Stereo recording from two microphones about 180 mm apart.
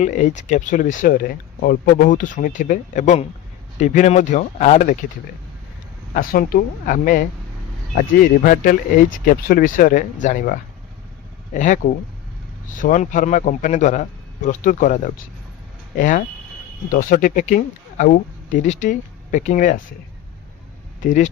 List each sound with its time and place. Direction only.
0.0 s speech: 45° left (ahead or behind)
6.1 s speech: 50° left (ahead or behind)
21.0 s speech: 40° left (ahead or behind)